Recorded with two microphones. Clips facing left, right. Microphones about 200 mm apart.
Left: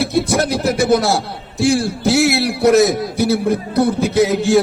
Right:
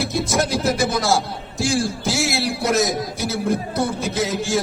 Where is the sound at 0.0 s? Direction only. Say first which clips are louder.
Left 5 dB; 65° left (ahead or behind).